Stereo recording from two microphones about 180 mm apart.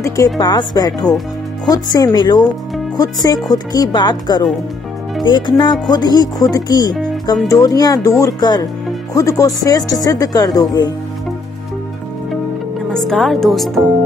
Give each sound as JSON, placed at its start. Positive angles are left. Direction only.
{"t": 0.0, "sound": "speech", "side_deg": 20}
{"t": 12.9, "sound": "speech", "side_deg": 0}